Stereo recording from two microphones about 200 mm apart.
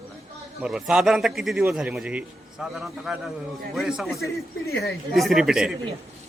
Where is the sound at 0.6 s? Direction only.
Centre (ahead or behind).